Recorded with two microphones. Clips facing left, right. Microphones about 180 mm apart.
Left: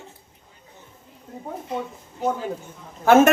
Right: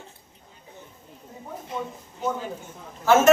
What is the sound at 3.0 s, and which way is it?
Speech, 60° left (ahead or behind).